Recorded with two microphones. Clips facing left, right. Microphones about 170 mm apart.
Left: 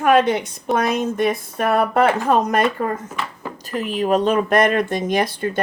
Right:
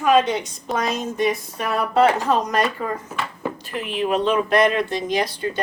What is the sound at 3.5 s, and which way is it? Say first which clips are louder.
Speech: left 3 dB; 40° left (ahead or behind).